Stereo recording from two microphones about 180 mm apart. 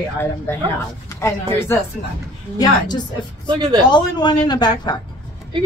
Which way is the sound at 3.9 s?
25° left (ahead or behind).